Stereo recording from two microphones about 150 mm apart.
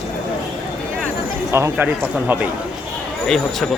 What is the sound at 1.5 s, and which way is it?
Speech, 20° right (ahead or behind).